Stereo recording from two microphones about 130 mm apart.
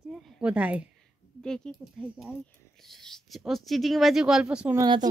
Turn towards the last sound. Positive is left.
turn(degrees=-5)  # may be behind; listen again after turning